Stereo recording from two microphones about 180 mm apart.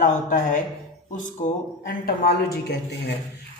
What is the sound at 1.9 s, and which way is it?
Speech, 60° left (ahead or behind).